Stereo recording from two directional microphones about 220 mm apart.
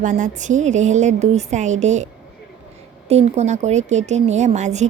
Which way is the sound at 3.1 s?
30° right (ahead or behind).